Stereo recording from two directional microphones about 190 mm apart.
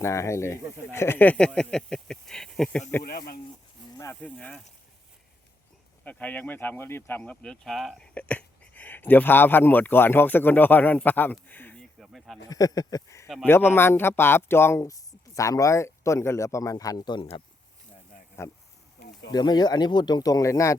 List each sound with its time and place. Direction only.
0.0 s speech: 15° left (ahead or behind)
3.0 s speech: 50° left (ahead or behind)
4.0 s speech: 10° left (ahead or behind)
6.1 s speech: 10° left (ahead or behind)
12.5 s speech: 20° left (ahead or behind)
18.4 s speech: 15° left (ahead or behind)